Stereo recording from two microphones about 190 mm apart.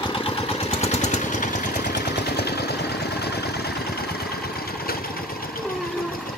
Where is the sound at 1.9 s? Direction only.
60° left (ahead or behind).